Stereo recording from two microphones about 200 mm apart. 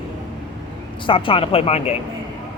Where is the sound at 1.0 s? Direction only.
25° left (ahead or behind).